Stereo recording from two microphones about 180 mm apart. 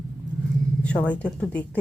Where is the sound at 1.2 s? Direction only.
5° left (ahead or behind).